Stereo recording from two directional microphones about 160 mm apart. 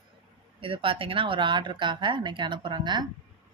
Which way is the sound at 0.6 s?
35° right (ahead or behind).